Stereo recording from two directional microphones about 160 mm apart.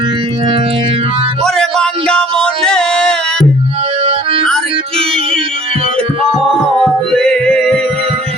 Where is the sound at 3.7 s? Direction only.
35° right (ahead or behind).